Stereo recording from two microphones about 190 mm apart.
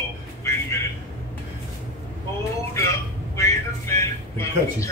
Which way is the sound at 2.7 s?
15° left (ahead or behind).